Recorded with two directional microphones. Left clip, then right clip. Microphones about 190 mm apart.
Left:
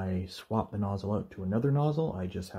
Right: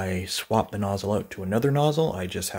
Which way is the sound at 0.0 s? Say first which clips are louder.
Right 9 dB; 20° right (ahead or behind).